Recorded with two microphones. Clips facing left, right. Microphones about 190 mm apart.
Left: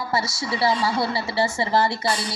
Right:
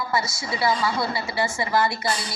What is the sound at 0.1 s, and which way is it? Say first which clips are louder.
A woman's voice: left 1 dB; 35° left (ahead or behind).